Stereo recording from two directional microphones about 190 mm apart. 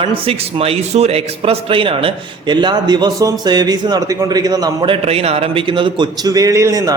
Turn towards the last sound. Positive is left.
turn(degrees=-15)  # may be behind; listen again after turning